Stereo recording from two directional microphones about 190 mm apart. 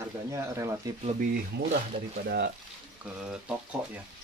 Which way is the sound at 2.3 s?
60° right (ahead or behind).